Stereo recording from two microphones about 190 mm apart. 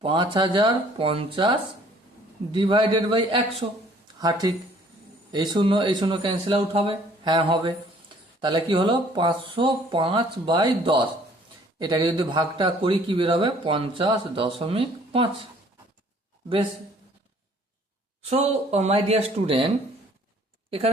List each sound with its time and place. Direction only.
0.0 s a man's voice: 25° right (ahead or behind)
18.2 s speech: 35° right (ahead or behind)
20.7 s speech: 30° right (ahead or behind)